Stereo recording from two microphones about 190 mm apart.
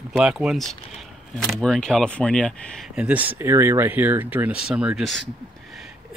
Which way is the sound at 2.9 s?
10° right (ahead or behind).